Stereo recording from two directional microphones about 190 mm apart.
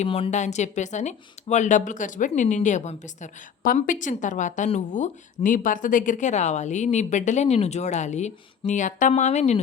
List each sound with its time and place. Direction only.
0.0 s speech: 35° left (ahead or behind)